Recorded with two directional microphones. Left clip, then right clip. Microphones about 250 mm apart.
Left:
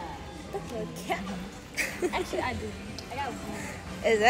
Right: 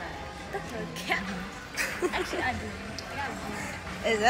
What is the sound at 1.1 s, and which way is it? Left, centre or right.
Speech, right.